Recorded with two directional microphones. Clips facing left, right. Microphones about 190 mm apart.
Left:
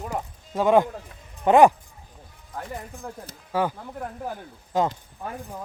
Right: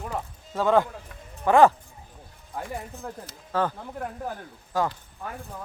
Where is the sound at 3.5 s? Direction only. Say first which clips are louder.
Left 1 dB; 10° left (ahead or behind).